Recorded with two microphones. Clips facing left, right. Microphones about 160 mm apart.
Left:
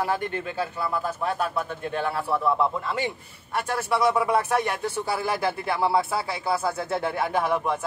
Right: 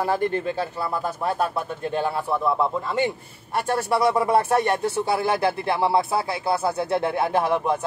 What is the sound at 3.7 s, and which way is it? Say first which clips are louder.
Speech: right 2 dB; 30° right (ahead or behind).